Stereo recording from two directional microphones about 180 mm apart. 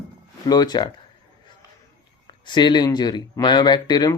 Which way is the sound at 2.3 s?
25° left (ahead or behind).